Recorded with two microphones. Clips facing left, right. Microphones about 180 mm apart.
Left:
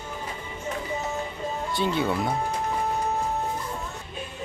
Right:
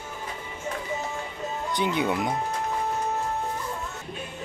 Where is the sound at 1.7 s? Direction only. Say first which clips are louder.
Even; 20° right (ahead or behind).